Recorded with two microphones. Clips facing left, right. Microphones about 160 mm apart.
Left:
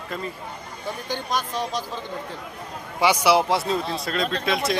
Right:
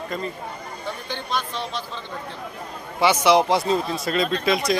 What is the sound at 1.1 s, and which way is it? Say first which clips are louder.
Speech: left 2 dB; 45° left (ahead or behind).